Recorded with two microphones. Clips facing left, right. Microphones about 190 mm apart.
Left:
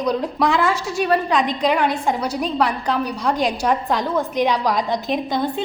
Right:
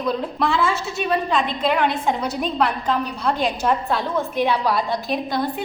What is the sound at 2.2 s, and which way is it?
A woman's voice, 10° left (ahead or behind).